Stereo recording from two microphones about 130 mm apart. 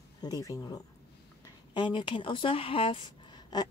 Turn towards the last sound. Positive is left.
turn(degrees=35)  # may be behind; listen again after turning